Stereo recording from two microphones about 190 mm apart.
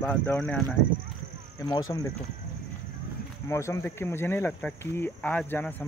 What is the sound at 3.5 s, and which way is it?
Speech, 15° left (ahead or behind).